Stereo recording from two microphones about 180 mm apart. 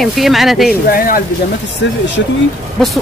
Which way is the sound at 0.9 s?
50° left (ahead or behind).